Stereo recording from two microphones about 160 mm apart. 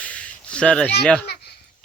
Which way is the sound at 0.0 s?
10° left (ahead or behind).